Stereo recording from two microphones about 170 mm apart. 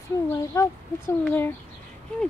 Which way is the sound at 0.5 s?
20° left (ahead or behind).